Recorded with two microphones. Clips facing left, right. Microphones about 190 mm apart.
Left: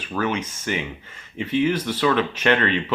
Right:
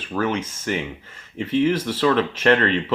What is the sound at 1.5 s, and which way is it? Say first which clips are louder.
Speech: right 1 dB; 30° right (ahead or behind).